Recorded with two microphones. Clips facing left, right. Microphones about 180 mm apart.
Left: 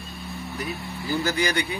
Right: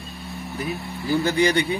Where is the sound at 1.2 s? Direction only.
30° right (ahead or behind).